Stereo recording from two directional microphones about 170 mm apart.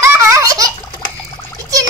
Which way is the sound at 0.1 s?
15° right (ahead or behind).